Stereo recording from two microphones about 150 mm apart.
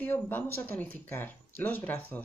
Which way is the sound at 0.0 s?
10° left (ahead or behind).